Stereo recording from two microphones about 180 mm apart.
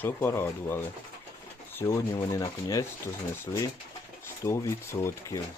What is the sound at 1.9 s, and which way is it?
Speech, 20° left (ahead or behind).